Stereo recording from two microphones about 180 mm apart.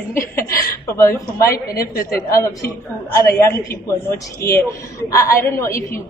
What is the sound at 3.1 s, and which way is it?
A woman's voice, 15° left (ahead or behind).